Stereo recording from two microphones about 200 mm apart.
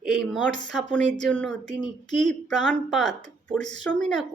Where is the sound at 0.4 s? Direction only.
65° right (ahead or behind).